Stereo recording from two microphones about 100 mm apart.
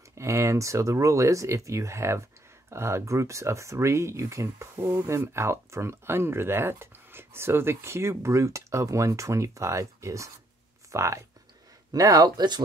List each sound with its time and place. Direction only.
0.1 s speech: 30° right (ahead or behind); by 12.6 s 45° right (ahead or behind)